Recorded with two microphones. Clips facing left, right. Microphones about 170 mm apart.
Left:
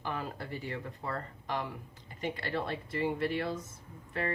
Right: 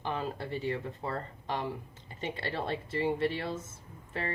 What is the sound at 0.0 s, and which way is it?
Speech, 25° right (ahead or behind).